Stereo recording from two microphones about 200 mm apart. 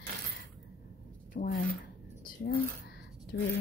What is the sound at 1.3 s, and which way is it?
Speech, 40° left (ahead or behind).